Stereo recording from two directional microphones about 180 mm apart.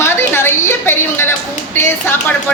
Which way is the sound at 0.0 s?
15° left (ahead or behind).